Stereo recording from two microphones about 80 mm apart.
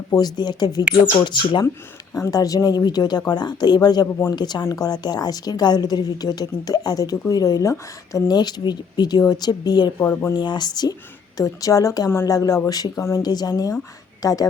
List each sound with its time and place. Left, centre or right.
0.2 s speech: left
1.2 s speech: left
2.3 s speech: left
4.0 s a woman's voice: left
4.4 s a woman's voice: left
8.3 s speech: left
10.0 s speech: left
10.3 s speech: left
11.3 s a woman's voice: left
13.0 s speech: left
13.2 s a woman's voice: left